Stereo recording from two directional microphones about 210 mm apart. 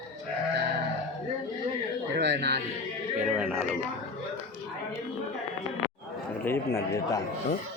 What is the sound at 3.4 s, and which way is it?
Speech, 5° right (ahead or behind).